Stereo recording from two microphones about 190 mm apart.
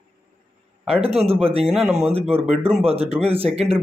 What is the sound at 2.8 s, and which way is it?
Speech, 30° right (ahead or behind).